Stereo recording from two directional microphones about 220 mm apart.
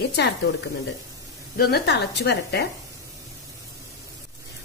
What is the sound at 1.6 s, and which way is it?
Speech, 50° left (ahead or behind).